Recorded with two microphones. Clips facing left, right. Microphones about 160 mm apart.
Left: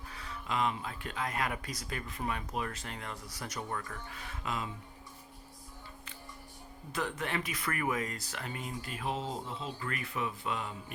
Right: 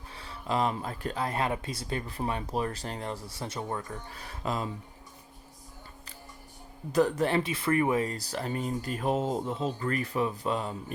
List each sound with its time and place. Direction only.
0.1 s speech: 30° right (ahead or behind)
4.1 s speech: 35° right (ahead or behind)
6.9 s speech: 35° right (ahead or behind)